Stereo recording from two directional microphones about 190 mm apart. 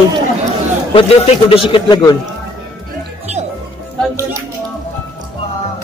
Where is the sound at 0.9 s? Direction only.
30° left (ahead or behind).